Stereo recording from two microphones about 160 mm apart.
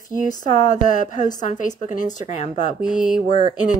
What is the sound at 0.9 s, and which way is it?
A woman's voice, 50° left (ahead or behind).